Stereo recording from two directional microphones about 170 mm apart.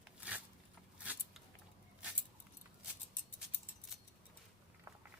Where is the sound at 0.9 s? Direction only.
5° right (ahead or behind).